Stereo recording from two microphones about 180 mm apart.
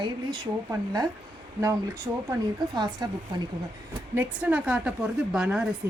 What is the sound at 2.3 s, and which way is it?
Speech, 25° right (ahead or behind).